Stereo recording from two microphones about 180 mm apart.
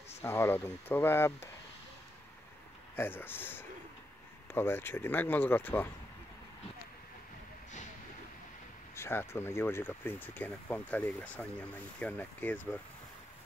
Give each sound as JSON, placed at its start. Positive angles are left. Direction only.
{"t": 0.2, "sound": "speech", "side_deg": 15}
{"t": 3.0, "sound": "speech", "side_deg": 10}
{"t": 8.9, "sound": "speech", "side_deg": 15}